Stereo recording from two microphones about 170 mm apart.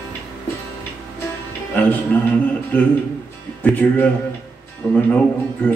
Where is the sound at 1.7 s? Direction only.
10° left (ahead or behind).